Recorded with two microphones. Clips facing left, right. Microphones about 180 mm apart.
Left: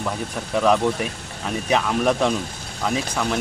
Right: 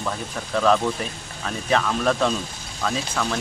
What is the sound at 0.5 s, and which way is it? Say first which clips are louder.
Speech: left 1 dB; 15° left (ahead or behind).